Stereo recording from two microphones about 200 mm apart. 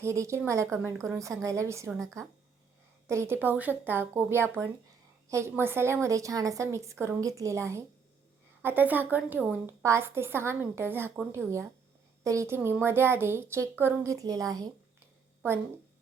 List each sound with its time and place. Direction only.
0.0 s a woman's voice: 15° right (ahead or behind)
3.1 s a woman's voice: 15° right (ahead or behind)